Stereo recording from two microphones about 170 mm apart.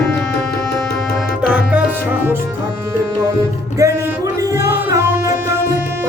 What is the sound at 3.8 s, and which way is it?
Music, 20° right (ahead or behind).